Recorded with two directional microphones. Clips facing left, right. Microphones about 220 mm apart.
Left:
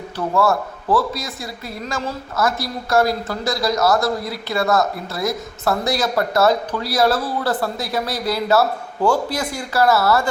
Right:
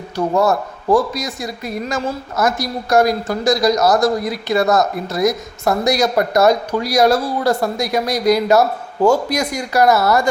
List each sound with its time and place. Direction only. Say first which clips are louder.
0.2 s a woman's voice: right 3 dB; 20° right (ahead or behind)